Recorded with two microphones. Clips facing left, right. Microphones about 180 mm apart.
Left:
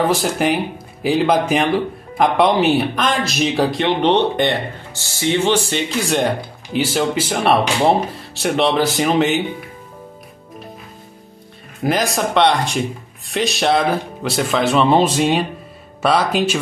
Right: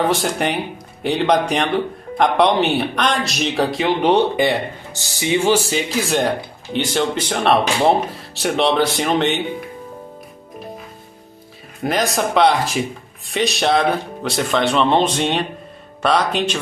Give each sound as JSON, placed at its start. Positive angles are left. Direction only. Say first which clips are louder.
{"t": 0.0, "sound": "speech", "louder": "left 2 dB", "side_deg": 0}
{"t": 11.8, "sound": "speech", "louder": "left 1 dB", "side_deg": 0}